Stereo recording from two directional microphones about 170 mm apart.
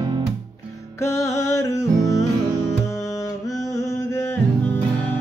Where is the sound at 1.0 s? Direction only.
15° left (ahead or behind).